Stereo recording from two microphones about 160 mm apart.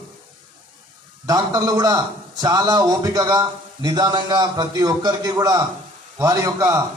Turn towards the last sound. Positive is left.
turn(degrees=-20)  # may be behind; listen again after turning